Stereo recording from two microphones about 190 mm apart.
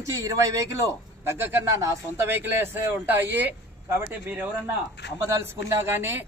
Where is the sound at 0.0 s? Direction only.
15° right (ahead or behind).